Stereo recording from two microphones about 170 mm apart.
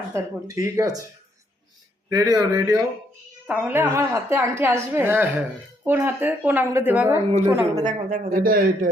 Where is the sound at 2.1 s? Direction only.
20° right (ahead or behind).